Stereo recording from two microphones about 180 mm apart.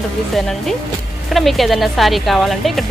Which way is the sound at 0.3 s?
Centre (ahead or behind).